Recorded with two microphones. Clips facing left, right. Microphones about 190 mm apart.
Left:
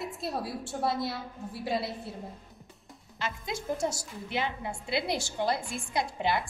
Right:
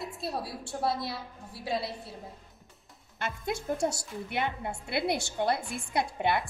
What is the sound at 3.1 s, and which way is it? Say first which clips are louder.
A woman's voice: right 2 dB; 60° right (ahead or behind).